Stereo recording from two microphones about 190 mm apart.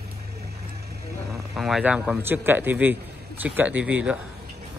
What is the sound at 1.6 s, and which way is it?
A man's voice, centre (ahead or behind).